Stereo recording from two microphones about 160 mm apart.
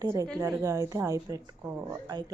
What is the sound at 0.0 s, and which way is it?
Speech, 20° right (ahead or behind).